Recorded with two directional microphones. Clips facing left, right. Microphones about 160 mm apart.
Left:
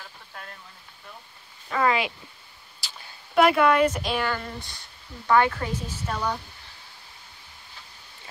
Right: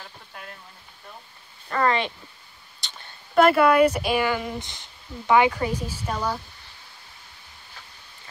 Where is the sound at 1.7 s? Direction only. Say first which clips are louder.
Right 1 dB; 5° left (ahead or behind).